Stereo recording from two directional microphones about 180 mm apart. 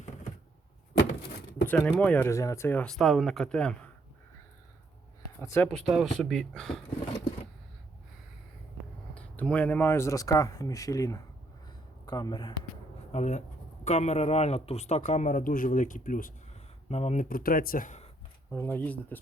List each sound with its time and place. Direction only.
1.6 s speech: 10° left (ahead or behind)
5.4 s speech: 15° left (ahead or behind)
9.1 s speech: 10° left (ahead or behind); by 12.5 s 25° left (ahead or behind)
13.1 s speech: 40° left (ahead or behind)
16.9 s speech: 35° left (ahead or behind)
18.5 s speech: 10° left (ahead or behind)